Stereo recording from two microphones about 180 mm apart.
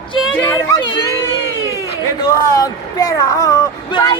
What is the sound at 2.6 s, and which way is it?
A man's voice, 20° left (ahead or behind).